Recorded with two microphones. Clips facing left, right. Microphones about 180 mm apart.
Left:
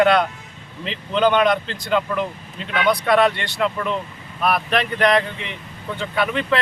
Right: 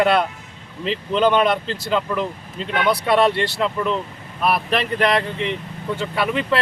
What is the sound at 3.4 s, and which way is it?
Speech, centre (ahead or behind).